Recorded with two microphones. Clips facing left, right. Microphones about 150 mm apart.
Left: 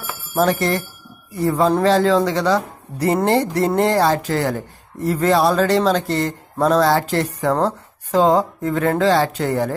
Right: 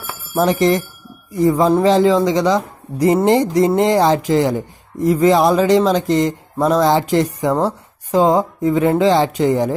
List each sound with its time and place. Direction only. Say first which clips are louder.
0.0 s bell: right 1 dB; 20° right (ahead or behind)
1.3 s a man's voice: right 3 dB; 10° right (ahead or behind)